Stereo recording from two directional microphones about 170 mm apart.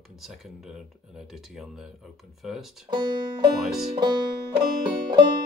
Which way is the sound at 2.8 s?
30° right (ahead or behind).